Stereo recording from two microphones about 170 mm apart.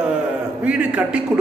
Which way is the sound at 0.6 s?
5° right (ahead or behind).